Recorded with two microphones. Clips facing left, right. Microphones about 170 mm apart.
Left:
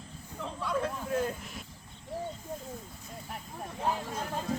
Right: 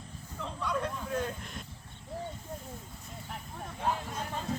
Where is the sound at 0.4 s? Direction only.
5° left (ahead or behind).